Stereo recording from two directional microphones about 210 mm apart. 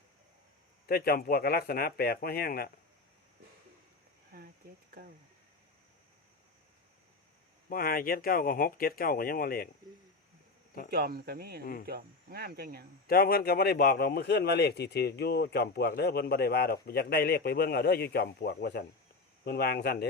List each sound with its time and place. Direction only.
0.9 s a man's voice: 45° left (ahead or behind)
4.3 s speech: 45° right (ahead or behind)
7.7 s a man's voice: 45° left (ahead or behind)
10.9 s speech: 45° right (ahead or behind)
11.6 s a man's voice: 45° left (ahead or behind)
11.9 s speech: 45° right (ahead or behind)
13.1 s a man's voice: 45° left (ahead or behind)